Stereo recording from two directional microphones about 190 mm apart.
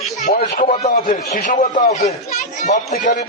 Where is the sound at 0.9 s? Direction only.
45° left (ahead or behind).